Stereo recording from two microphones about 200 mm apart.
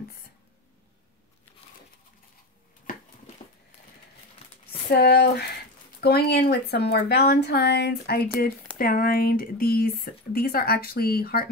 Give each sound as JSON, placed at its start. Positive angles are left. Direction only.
{"t": 4.8, "sound": "speech", "side_deg": 55}